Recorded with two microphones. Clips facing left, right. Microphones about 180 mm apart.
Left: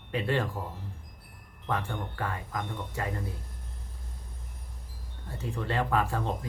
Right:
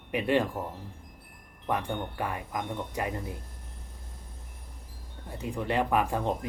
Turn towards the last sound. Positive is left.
turn(degrees=-15)  # may be behind; listen again after turning